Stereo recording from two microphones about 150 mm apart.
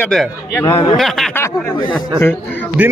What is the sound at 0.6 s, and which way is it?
Speech, 25° left (ahead or behind).